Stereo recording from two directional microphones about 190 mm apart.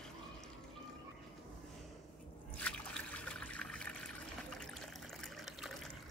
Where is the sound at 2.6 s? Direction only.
5° left (ahead or behind).